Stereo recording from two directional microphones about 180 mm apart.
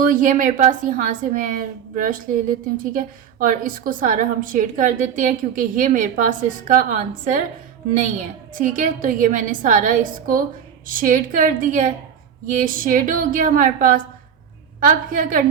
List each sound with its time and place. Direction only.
0.0 s a woman's voice: 50° right (ahead or behind)
8.5 s a woman's voice: 50° right (ahead or behind)